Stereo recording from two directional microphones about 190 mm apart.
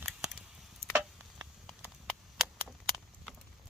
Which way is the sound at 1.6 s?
Centre (ahead or behind).